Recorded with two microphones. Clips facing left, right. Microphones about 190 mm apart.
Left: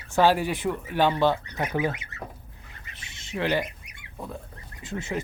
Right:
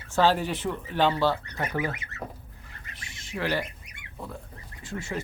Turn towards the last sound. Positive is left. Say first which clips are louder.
# left 2 dB
turn(degrees=20)  # may be behind; listen again after turning